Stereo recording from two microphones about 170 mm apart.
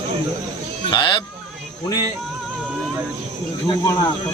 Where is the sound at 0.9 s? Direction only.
25° left (ahead or behind).